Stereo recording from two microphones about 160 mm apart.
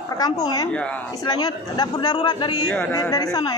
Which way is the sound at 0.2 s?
25° left (ahead or behind).